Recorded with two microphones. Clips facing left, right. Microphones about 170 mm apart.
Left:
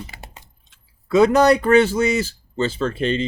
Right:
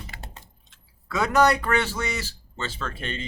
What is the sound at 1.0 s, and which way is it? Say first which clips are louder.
A man's voice: left 7 dB; 20° left (ahead or behind).